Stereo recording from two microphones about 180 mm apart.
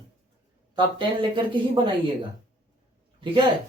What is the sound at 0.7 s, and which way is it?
Speech, 25° right (ahead or behind).